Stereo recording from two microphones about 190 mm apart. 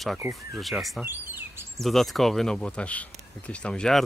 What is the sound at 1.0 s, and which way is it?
Bird vocalization, 10° right (ahead or behind).